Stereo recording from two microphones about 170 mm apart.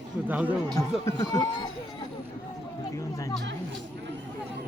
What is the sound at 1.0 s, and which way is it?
Speech, 20° left (ahead or behind).